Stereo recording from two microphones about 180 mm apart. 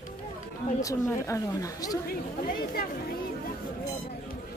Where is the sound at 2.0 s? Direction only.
55° left (ahead or behind).